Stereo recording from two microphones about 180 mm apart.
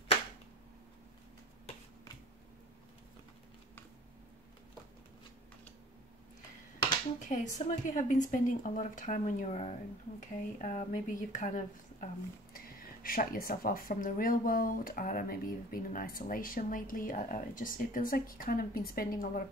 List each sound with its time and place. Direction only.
7.2 s speech: 45° left (ahead or behind)